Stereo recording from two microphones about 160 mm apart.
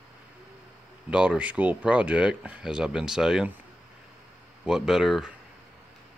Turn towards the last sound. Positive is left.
turn(degrees=0)  # may be behind; listen again after turning